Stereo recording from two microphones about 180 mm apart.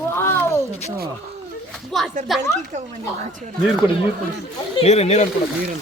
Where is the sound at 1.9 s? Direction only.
Centre (ahead or behind).